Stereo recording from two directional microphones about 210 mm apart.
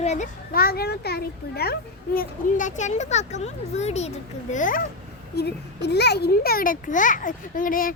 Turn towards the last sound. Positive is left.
turn(degrees=40)  # may be behind; listen again after turning